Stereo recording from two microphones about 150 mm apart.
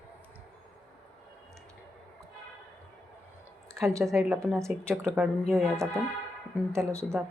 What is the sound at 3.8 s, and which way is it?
Speech, centre (ahead or behind).